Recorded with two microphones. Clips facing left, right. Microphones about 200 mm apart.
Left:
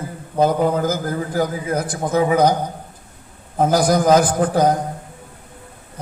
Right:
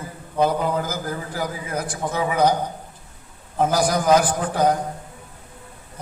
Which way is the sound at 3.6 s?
40° left (ahead or behind).